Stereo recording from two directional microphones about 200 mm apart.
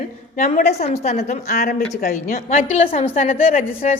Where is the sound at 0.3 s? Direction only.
40° left (ahead or behind).